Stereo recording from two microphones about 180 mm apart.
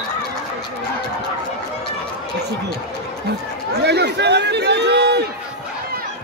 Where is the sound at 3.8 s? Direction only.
70° right (ahead or behind).